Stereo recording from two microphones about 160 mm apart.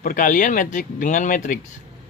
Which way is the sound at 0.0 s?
55° left (ahead or behind).